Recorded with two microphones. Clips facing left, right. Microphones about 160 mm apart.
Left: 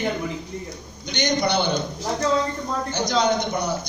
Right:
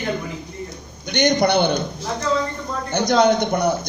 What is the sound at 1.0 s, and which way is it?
Speech, 55° right (ahead or behind).